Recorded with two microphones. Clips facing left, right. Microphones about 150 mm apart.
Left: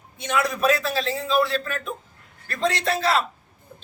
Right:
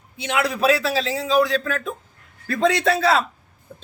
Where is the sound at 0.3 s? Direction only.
75° right (ahead or behind).